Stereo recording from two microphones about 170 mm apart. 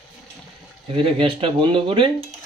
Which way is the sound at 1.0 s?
30° right (ahead or behind).